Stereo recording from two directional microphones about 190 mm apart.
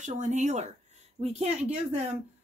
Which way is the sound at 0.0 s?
40° right (ahead or behind).